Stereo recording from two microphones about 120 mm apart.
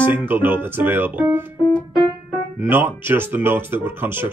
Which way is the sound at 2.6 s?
20° right (ahead or behind).